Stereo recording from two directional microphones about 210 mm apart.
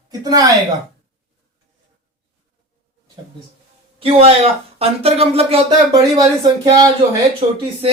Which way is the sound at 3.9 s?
25° right (ahead or behind).